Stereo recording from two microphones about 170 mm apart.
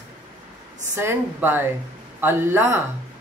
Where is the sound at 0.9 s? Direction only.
15° right (ahead or behind).